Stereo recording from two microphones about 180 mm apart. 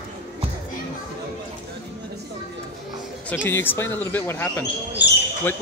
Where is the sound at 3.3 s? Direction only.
10° left (ahead or behind).